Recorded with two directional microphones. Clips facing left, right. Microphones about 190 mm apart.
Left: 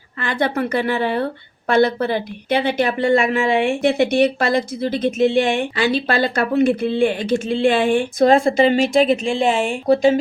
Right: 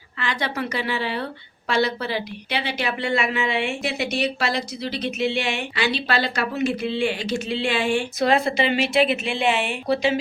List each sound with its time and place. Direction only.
0.2 s a woman's voice: 50° left (ahead or behind)